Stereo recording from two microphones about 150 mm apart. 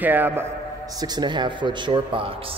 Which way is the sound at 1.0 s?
30° right (ahead or behind).